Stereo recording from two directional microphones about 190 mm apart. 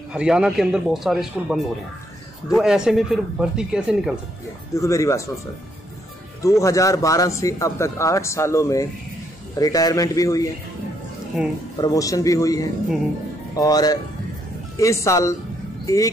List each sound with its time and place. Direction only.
0.1 s speech: 5° right (ahead or behind)
4.7 s speech: 15° left (ahead or behind)
6.4 s a man's voice: 15° left (ahead or behind)
11.3 s speech: centre (ahead or behind)
11.8 s a man's voice: 20° left (ahead or behind)